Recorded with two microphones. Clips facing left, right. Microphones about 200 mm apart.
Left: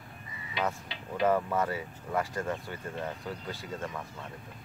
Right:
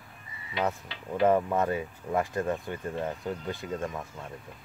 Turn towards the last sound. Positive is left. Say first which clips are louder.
# right 4 dB
turn(degrees=-20)  # may be behind; listen again after turning